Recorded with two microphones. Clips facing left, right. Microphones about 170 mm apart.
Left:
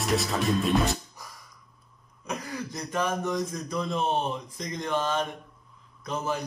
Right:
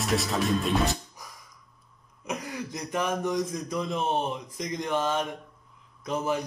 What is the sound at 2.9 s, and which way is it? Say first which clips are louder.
Mantra: right 1 dB; 15° right (ahead or behind).